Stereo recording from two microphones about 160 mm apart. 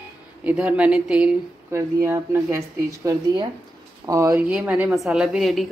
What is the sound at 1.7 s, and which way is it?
Speech, 15° right (ahead or behind).